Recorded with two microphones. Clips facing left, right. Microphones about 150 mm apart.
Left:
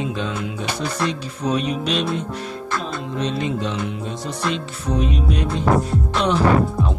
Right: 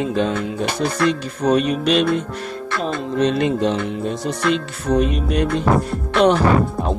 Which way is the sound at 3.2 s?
60° right (ahead or behind).